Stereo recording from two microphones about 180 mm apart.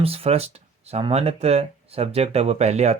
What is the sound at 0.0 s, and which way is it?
Speech, 35° right (ahead or behind).